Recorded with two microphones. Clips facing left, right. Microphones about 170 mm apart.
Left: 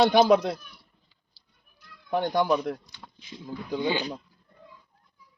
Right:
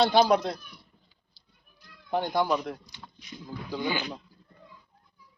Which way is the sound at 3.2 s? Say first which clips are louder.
Left 3 dB; 25° left (ahead or behind).